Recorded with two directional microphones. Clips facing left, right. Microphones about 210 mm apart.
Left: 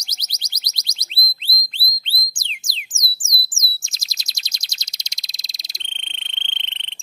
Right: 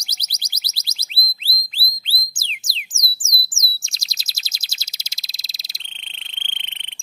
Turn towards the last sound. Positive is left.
turn(degrees=-10)  # may be behind; listen again after turning